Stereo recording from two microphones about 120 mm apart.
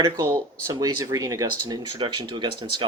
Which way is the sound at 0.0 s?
30° right (ahead or behind).